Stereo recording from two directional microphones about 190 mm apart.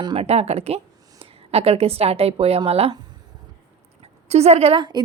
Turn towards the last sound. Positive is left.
turn(degrees=-25)  # may be behind; listen again after turning